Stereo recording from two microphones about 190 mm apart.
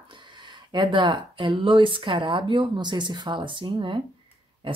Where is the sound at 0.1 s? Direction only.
25° right (ahead or behind).